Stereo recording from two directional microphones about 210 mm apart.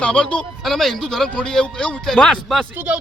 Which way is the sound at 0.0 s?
5° left (ahead or behind).